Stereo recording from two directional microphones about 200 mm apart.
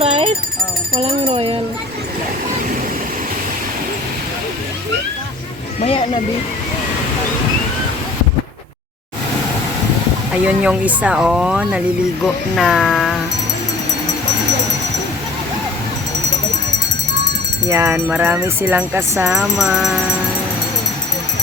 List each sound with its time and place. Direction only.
0.0 s a sound: 30° right (ahead or behind)
0.9 s speech: 30° right (ahead or behind)
10.3 s speech: 5° right (ahead or behind)
17.7 s speech: 10° right (ahead or behind)